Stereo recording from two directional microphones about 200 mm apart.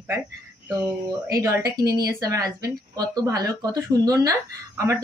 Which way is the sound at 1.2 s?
15° right (ahead or behind).